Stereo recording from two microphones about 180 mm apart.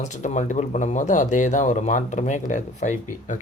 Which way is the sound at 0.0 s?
40° left (ahead or behind).